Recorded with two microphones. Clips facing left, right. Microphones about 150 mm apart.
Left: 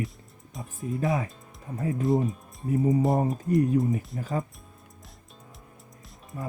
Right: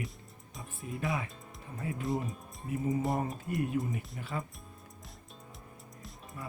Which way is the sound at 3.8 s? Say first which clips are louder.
Left 8 dB; 40° left (ahead or behind).